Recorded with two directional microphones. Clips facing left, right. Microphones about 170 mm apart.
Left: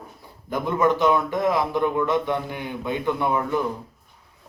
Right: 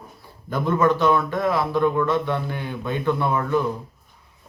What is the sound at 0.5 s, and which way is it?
A man's voice, 15° left (ahead or behind).